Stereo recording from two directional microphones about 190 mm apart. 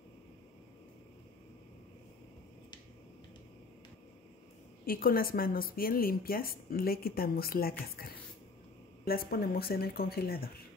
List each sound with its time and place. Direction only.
4.8 s a woman's voice: 50° left (ahead or behind)